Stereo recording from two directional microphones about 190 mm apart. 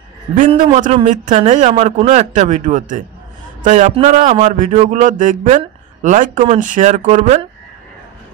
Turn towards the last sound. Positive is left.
turn(degrees=-40)  # may be behind; listen again after turning